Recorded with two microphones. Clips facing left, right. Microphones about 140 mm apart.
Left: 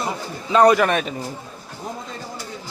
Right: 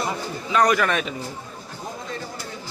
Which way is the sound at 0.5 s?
25° left (ahead or behind).